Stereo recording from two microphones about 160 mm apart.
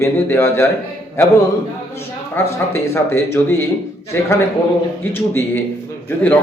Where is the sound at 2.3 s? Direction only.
15° left (ahead or behind).